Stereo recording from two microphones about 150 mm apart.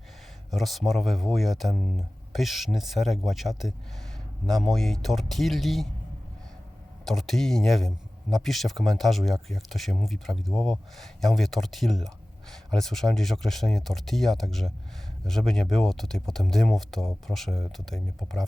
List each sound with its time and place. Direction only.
0.5 s speech: centre (ahead or behind)
7.0 s speech: centre (ahead or behind)